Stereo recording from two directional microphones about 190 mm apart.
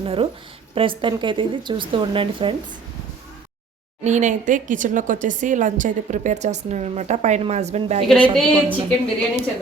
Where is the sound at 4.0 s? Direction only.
40° right (ahead or behind).